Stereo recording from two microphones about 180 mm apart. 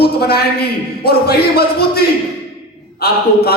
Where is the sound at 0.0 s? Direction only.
60° left (ahead or behind).